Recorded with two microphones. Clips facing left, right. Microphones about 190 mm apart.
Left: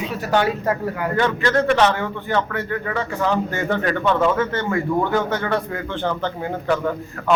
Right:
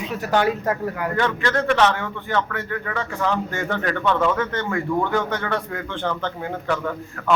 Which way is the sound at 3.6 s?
25° left (ahead or behind).